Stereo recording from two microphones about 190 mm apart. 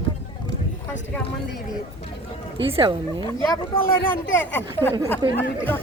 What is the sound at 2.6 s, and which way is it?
Speech, 25° right (ahead or behind).